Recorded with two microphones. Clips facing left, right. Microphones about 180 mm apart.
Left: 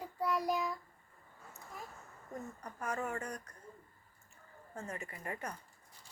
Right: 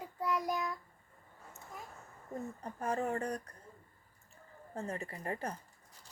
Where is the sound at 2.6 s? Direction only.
30° right (ahead or behind).